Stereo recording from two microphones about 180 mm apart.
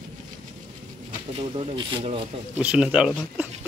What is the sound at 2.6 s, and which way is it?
Speech, 5° right (ahead or behind).